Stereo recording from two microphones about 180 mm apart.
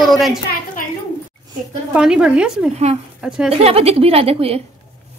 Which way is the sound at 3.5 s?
35° right (ahead or behind).